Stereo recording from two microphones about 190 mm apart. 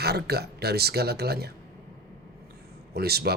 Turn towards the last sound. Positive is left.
turn(degrees=-55)  # may be behind; listen again after turning